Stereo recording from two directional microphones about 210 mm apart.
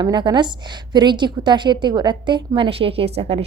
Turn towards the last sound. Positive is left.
turn(degrees=-30)  # may be behind; listen again after turning